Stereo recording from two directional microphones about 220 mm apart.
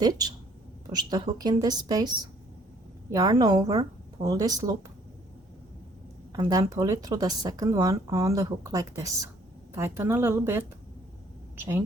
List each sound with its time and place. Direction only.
0.0 s speech: 20° right (ahead or behind)
3.1 s speech: 15° right (ahead or behind)
6.3 s a woman's voice: 15° right (ahead or behind)